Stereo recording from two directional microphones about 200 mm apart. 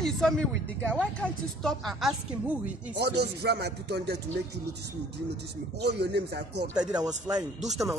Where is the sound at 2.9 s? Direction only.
55° right (ahead or behind).